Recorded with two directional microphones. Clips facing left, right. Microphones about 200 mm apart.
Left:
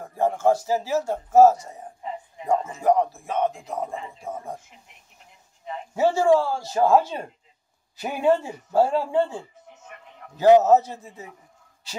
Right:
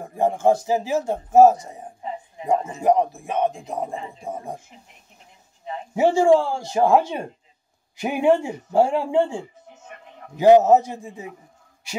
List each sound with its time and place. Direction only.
0.0 s a man's voice: 15° right (ahead or behind)
5.9 s a man's voice: 15° right (ahead or behind)
10.6 s a man's voice: 15° right (ahead or behind)